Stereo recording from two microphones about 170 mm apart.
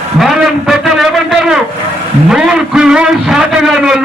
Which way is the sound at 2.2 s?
5° right (ahead or behind).